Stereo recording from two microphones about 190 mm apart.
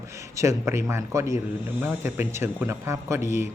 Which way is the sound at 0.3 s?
15° right (ahead or behind).